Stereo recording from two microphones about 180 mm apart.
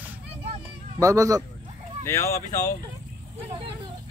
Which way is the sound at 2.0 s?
15° left (ahead or behind).